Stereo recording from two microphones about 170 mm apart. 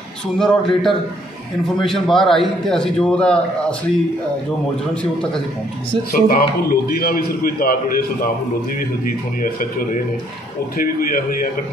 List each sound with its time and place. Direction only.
0.4 s a man's voice: 5° left (ahead or behind)
6.1 s a man's voice: 55° left (ahead or behind)
10.8 s a man's voice: 55° left (ahead or behind)